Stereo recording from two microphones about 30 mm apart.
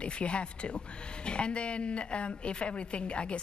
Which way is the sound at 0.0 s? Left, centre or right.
Left.